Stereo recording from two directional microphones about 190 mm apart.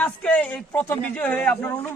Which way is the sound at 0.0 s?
5° left (ahead or behind).